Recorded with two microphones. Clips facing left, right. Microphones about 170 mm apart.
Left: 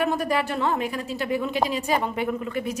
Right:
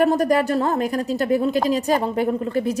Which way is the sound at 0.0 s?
40° right (ahead or behind).